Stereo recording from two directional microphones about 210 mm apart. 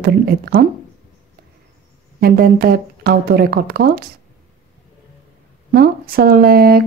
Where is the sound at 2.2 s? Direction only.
45° right (ahead or behind).